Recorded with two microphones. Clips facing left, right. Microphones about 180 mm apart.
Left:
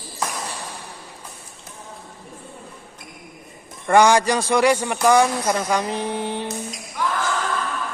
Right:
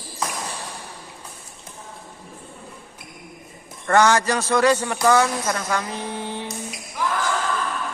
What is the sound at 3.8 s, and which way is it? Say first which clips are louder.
Speech: left 2 dB; 10° left (ahead or behind).